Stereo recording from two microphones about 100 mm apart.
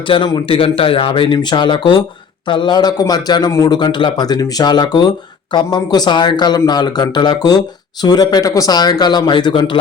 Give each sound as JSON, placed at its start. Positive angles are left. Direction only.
{"t": 0.1, "sound": "speech", "side_deg": 55}
{"t": 3.8, "sound": "speech", "side_deg": 50}